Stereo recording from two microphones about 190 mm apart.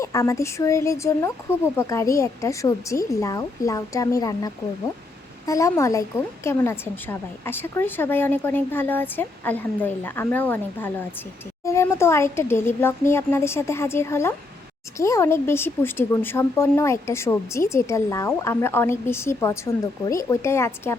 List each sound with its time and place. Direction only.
0.0 s speech: 15° left (ahead or behind)